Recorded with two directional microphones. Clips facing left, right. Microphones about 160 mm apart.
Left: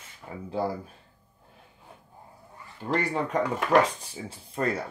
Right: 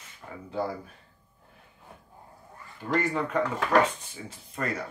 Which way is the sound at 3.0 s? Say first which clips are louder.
Even; 35° left (ahead or behind).